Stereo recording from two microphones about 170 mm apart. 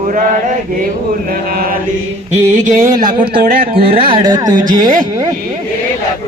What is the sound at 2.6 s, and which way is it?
A man's voice, 50° right (ahead or behind).